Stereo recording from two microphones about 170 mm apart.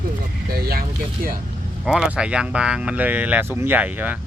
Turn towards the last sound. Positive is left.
turn(degrees=-10)  # may be behind; listen again after turning